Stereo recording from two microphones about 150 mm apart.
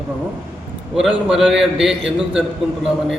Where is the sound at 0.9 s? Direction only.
Centre (ahead or behind).